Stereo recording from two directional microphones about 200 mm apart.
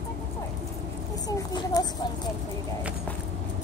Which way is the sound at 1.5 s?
20° left (ahead or behind).